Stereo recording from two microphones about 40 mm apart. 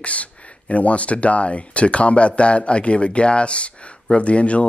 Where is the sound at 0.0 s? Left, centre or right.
Left.